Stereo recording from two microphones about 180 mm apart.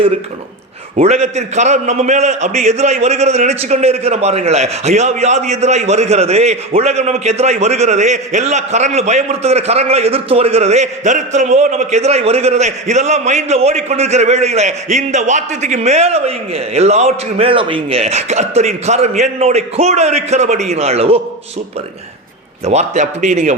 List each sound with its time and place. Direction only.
0.9 s a man's voice: 40° right (ahead or behind)
22.6 s a man's voice: 40° right (ahead or behind)